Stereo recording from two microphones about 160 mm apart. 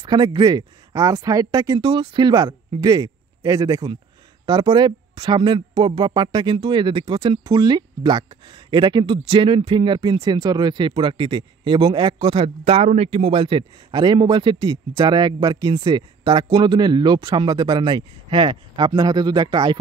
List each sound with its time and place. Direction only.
0.0 s speech: 30° right (ahead or behind)